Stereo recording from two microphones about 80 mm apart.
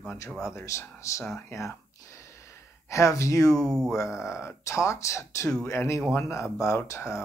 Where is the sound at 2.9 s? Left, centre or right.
Left.